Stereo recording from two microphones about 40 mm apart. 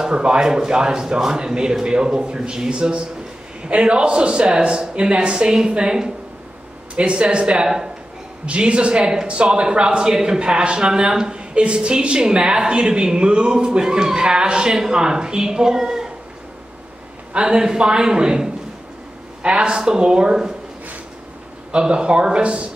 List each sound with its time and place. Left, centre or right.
0.0 s speech: right
17.3 s speech: right
21.7 s speech: right